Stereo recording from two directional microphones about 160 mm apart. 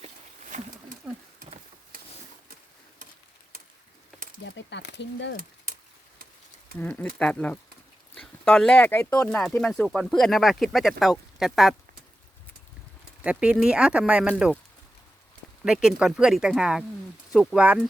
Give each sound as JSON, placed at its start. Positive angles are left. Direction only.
{"t": 0.0, "sound": "a sound", "side_deg": -50}
{"t": 4.7, "sound": "speech", "side_deg": 90}
{"t": 6.7, "sound": "speech", "side_deg": 10}
{"t": 13.2, "sound": "speech", "side_deg": -5}
{"t": 15.6, "sound": "speech", "side_deg": -5}